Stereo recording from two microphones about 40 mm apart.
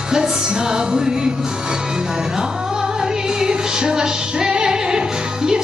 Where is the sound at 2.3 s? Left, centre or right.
Centre.